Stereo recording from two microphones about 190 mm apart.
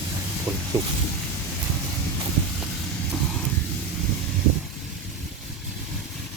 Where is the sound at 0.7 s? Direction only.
15° right (ahead or behind).